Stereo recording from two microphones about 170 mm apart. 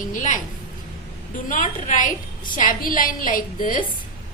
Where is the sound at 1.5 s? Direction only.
50° left (ahead or behind).